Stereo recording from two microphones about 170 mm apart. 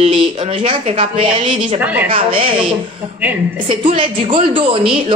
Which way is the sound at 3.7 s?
30° right (ahead or behind).